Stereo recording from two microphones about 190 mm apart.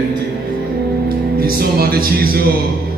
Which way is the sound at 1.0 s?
50° right (ahead or behind).